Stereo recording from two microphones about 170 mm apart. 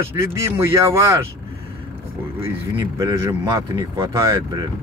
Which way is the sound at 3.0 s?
20° right (ahead or behind).